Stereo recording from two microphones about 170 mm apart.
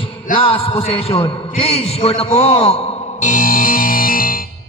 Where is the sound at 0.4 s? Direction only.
30° left (ahead or behind).